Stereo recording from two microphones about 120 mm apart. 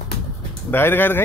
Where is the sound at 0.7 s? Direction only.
15° left (ahead or behind).